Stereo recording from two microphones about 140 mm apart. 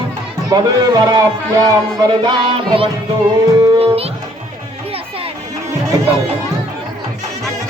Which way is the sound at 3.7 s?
45° right (ahead or behind).